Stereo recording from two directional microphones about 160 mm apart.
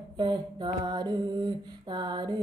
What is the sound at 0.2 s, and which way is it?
A woman's voice, 30° right (ahead or behind).